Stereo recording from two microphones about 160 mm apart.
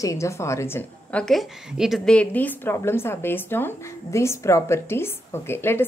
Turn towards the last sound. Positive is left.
turn(degrees=15)  # may be behind; listen again after turning